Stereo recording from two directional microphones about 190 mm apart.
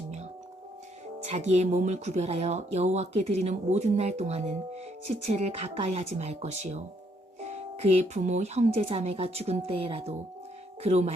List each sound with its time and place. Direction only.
1.2 s speech: 35° right (ahead or behind)